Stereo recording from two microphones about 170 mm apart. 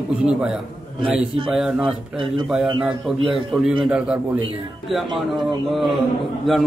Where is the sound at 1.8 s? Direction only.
30° right (ahead or behind).